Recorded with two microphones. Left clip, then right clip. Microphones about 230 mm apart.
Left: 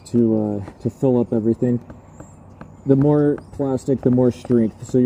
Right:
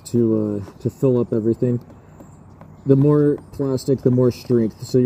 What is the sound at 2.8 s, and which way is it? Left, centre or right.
Speech, centre.